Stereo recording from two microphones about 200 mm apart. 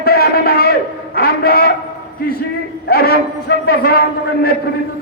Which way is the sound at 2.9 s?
50° left (ahead or behind).